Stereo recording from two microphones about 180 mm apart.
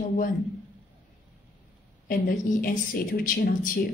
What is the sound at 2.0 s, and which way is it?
Speech, 55° left (ahead or behind).